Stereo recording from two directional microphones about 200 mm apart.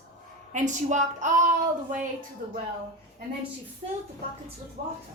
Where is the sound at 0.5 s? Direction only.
35° right (ahead or behind).